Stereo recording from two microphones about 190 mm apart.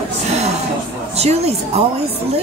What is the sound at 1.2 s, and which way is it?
Speech, 35° right (ahead or behind).